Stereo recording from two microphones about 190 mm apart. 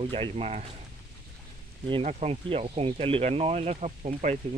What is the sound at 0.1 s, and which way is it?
Speech, 30° right (ahead or behind).